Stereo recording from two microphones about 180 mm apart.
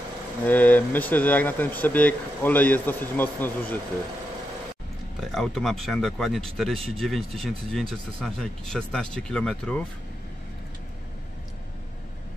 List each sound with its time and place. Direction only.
0.5 s speech: 10° left (ahead or behind)
5.2 s speech: centre (ahead or behind)